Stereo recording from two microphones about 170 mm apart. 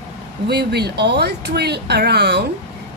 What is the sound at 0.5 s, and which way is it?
A woman's voice, 75° right (ahead or behind).